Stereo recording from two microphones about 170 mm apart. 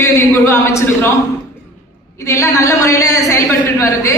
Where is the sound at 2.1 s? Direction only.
15° left (ahead or behind).